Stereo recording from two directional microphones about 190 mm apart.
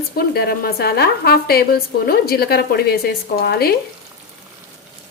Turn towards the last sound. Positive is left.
turn(degrees=55)  # may be behind; listen again after turning